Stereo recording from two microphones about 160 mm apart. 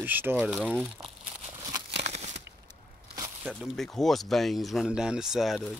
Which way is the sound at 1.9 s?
45° right (ahead or behind).